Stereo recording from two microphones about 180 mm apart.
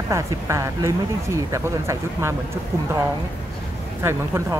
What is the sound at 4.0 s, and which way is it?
Speech, 15° right (ahead or behind).